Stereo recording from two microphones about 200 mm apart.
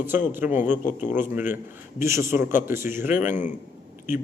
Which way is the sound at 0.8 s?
40° left (ahead or behind).